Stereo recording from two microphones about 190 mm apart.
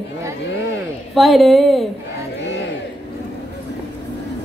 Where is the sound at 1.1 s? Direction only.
Centre (ahead or behind).